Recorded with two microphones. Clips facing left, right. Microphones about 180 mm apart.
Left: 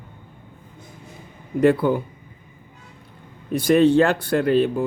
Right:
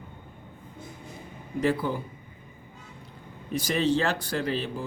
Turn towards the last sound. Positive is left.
turn(degrees=60)  # may be behind; listen again after turning